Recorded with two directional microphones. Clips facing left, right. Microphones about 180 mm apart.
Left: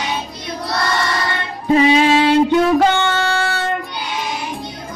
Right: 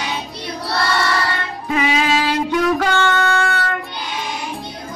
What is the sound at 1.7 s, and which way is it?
Music, 30° left (ahead or behind).